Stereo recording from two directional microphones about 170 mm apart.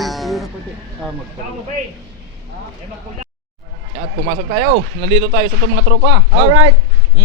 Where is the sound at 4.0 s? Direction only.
50° right (ahead or behind); by 6.1 s 90° right.